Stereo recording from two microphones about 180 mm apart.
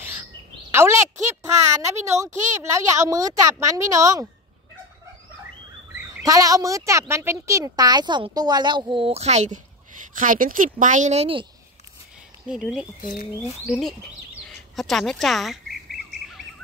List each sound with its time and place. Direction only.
0.7 s a woman's voice: 15° right (ahead or behind)
6.2 s a woman's voice: 20° right (ahead or behind)
12.4 s speech: 5° right (ahead or behind)
13.0 s speech: 50° left (ahead or behind)
13.7 s speech: 5° right (ahead or behind)
14.8 s bird vocalization: centre (ahead or behind)